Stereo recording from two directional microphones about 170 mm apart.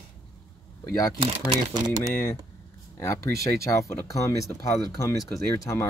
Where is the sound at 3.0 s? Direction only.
15° left (ahead or behind).